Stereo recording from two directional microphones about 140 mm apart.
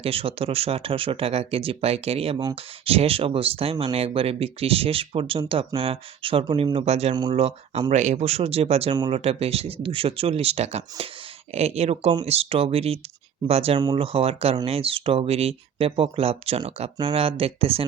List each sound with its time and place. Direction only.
0.0 s speech: 40° right (ahead or behind)
7.9 s speech: 60° right (ahead or behind)